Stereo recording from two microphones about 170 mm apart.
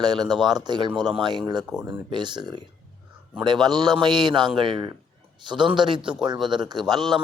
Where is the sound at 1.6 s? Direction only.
5° right (ahead or behind).